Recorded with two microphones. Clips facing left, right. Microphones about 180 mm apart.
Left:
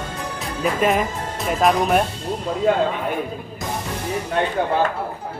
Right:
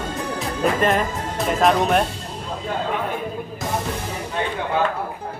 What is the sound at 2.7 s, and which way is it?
Speech, 80° left.